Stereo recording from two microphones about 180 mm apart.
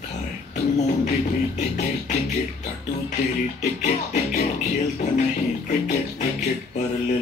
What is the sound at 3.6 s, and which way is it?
Music, 40° left (ahead or behind).